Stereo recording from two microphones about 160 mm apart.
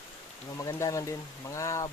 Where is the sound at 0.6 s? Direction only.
20° left (ahead or behind).